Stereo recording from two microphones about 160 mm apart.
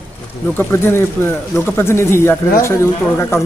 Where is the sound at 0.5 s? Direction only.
15° left (ahead or behind).